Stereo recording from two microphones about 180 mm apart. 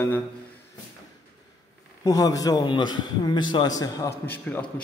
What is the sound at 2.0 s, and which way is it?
A man's voice, 20° left (ahead or behind).